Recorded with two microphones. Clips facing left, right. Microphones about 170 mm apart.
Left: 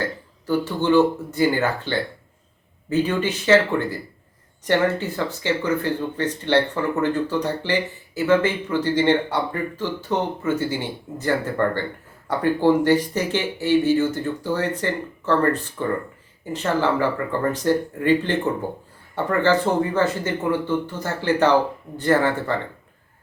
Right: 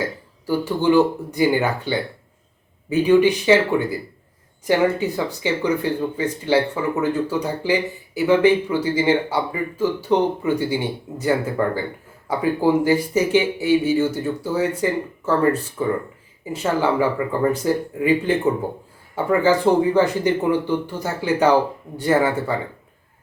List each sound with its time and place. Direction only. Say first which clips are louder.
0.0 s speech: right 1 dB; 10° right (ahead or behind)